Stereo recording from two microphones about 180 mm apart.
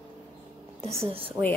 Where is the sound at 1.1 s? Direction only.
30° right (ahead or behind).